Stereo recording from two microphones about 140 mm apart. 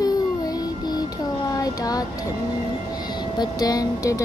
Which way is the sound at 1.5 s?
25° left (ahead or behind).